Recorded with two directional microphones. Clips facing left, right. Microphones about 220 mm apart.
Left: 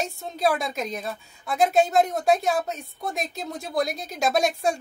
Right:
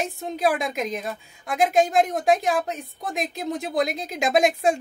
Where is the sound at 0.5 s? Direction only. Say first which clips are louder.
Right 1 dB; 15° right (ahead or behind).